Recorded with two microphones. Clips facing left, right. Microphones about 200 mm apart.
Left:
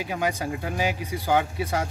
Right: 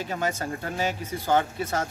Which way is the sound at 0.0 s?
10° left (ahead or behind).